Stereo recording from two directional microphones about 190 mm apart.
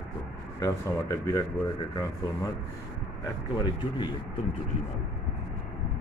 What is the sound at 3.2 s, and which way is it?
Speech, 25° left (ahead or behind).